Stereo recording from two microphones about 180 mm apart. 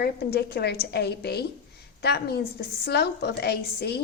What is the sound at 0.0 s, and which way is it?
A woman's voice, 60° left (ahead or behind).